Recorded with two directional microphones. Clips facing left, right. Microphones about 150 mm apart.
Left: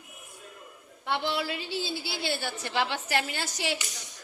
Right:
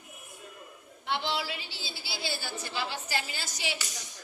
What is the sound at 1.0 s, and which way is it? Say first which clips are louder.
A woman's voice: left 3 dB; 60° left (ahead or behind).